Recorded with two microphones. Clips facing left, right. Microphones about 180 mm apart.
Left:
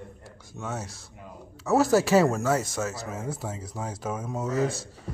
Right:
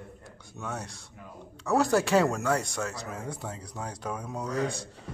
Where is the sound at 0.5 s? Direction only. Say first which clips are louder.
Left 2 dB; 5° left (ahead or behind).